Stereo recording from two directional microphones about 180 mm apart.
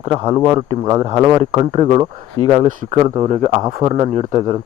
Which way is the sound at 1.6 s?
40° right (ahead or behind).